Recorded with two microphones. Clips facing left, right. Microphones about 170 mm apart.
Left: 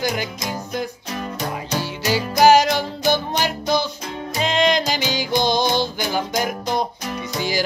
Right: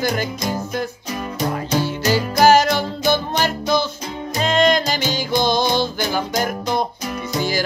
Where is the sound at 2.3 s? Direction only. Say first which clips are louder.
Left 1 dB; 15° left (ahead or behind).